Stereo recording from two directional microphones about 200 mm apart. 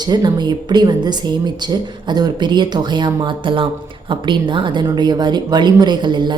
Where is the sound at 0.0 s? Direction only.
20° right (ahead or behind).